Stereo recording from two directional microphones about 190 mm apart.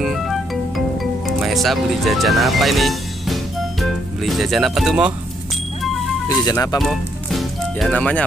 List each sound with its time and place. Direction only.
0.0 s music: centre (ahead or behind)
3.8 s speech: centre (ahead or behind)
6.2 s speech: 20° left (ahead or behind)
6.8 s music: centre (ahead or behind)